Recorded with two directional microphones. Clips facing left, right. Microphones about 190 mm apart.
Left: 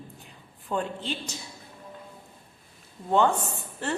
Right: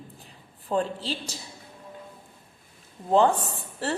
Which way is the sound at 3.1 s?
35° right (ahead or behind).